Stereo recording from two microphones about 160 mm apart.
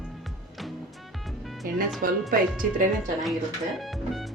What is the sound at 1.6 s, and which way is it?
Speech, 60° right (ahead or behind).